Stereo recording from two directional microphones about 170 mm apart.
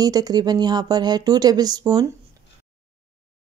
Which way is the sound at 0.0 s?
20° right (ahead or behind).